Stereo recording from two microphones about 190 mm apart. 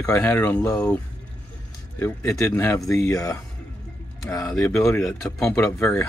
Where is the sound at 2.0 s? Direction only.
15° left (ahead or behind).